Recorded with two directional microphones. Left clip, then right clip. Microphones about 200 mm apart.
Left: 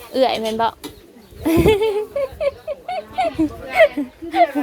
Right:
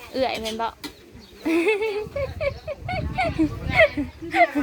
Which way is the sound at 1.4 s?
20° left (ahead or behind).